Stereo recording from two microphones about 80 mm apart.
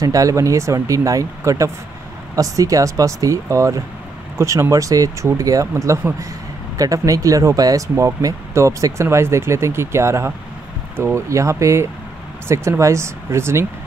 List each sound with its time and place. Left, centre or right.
0.0 s speech: right